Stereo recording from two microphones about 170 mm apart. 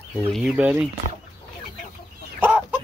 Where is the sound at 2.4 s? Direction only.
10° right (ahead or behind).